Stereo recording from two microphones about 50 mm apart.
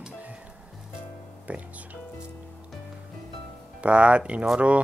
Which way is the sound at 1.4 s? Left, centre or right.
Right.